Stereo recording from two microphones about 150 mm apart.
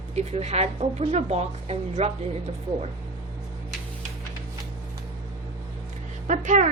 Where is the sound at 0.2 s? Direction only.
45° right (ahead or behind).